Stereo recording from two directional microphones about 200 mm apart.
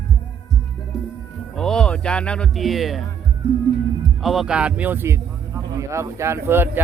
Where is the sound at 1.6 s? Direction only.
5° left (ahead or behind).